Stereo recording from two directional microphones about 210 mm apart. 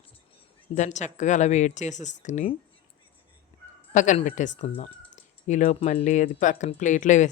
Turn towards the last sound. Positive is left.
turn(degrees=35)  # may be behind; listen again after turning